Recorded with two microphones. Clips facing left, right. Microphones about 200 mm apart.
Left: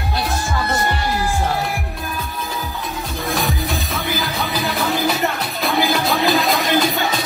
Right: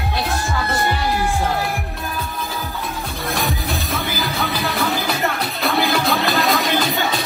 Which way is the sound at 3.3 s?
Centre (ahead or behind).